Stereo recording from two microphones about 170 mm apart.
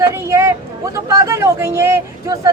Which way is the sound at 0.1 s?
15° right (ahead or behind).